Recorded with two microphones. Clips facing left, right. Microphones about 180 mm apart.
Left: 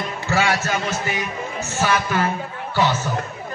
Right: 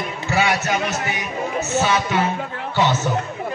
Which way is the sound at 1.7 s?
20° right (ahead or behind).